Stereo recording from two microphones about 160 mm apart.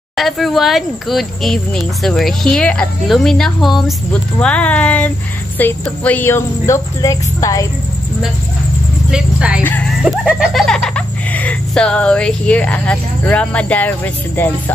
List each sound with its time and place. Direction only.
0.2 s speech: centre (ahead or behind); by 7.6 s 20° left (ahead or behind)
9.1 s speech: 5° right (ahead or behind)
9.6 s speech: 10° left (ahead or behind)
10.0 s speech: 5° right (ahead or behind); by 14.5 s 10° left (ahead or behind)